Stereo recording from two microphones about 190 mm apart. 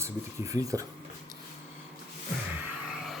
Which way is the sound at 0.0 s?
15° right (ahead or behind).